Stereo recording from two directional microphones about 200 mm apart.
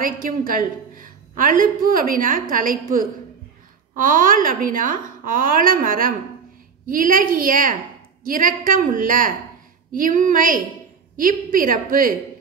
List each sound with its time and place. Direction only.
0.0 s a woman's voice: 45° right (ahead or behind)
3.9 s a woman's voice: 45° right (ahead or behind)